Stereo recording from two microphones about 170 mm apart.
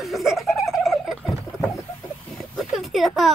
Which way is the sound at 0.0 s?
Centre (ahead or behind).